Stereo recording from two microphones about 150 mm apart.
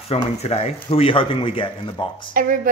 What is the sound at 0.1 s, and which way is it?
Speech, 45° left (ahead or behind).